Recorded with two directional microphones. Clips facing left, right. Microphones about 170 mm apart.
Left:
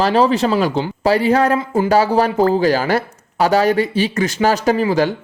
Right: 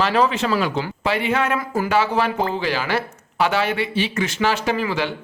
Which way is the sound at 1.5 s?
25° left (ahead or behind).